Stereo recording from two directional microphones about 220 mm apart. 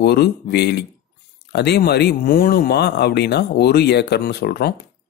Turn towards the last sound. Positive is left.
turn(degrees=45)  # may be behind; listen again after turning